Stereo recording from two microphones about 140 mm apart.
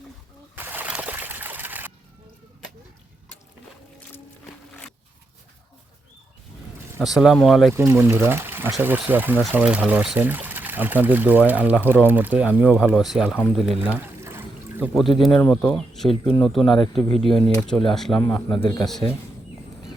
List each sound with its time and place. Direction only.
0.5 s splash: 15° right (ahead or behind)
7.0 s speech: centre (ahead or behind)
7.7 s speech: 15° right (ahead or behind)
13.8 s pour: 10° right (ahead or behind)
14.9 s speech: centre (ahead or behind)
16.6 s speech: 35° left (ahead or behind)
17.2 s speech: centre (ahead or behind)
18.2 s a man's voice: 15° left (ahead or behind)
18.8 s speech: centre (ahead or behind)